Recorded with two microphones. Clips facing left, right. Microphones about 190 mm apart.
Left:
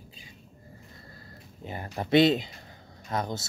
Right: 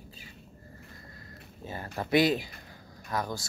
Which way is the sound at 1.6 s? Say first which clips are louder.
Left 1 dB; 20° left (ahead or behind).